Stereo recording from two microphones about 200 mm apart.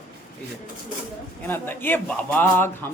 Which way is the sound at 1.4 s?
10° left (ahead or behind).